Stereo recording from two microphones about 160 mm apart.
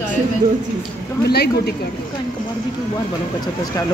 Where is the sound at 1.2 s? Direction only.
90° left.